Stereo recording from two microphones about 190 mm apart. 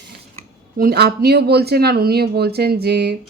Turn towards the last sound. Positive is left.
turn(degrees=-60)  # may be behind; listen again after turning